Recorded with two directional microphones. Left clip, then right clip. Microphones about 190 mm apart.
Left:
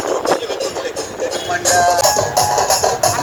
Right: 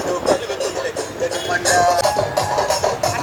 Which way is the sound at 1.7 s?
50° left (ahead or behind).